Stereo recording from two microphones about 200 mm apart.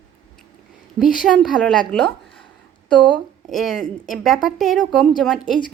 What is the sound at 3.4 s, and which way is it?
A woman's voice, centre (ahead or behind).